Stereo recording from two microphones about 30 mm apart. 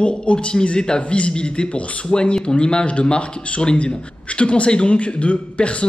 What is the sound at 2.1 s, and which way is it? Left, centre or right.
Speech, left.